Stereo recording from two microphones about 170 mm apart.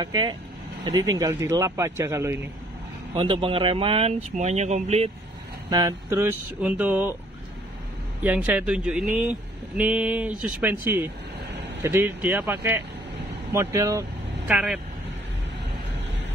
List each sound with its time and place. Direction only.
0.0 s speech: 25° right (ahead or behind)
3.2 s speech: 30° right (ahead or behind)
5.7 s speech: 20° right (ahead or behind)
8.2 s speech: 10° right (ahead or behind)
14.5 s speech: 5° right (ahead or behind)